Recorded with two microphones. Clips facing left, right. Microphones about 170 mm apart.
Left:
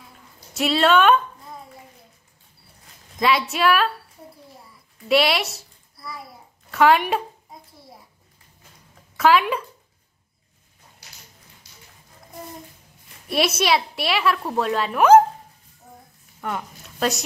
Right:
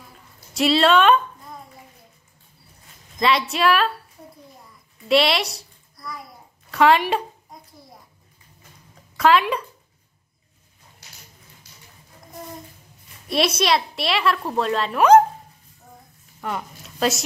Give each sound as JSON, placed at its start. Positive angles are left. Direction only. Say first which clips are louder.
{"t": 0.6, "sound": "speech", "louder": "right 1 dB", "side_deg": 0}
{"t": 3.2, "sound": "a woman's voice", "louder": "even", "side_deg": 5}
{"t": 5.0, "sound": "a child's voice", "louder": "right 1 dB", "side_deg": 0}
{"t": 6.7, "sound": "a sound", "louder": "even", "side_deg": 0}
{"t": 9.1, "sound": "speech", "louder": "even", "side_deg": 5}
{"t": 13.3, "sound": "a woman's voice", "louder": "even", "side_deg": 5}
{"t": 16.3, "sound": "a woman's voice", "louder": "even", "side_deg": 0}